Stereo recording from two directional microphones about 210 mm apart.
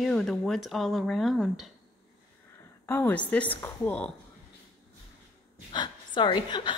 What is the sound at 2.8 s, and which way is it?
A woman's voice, 10° left (ahead or behind).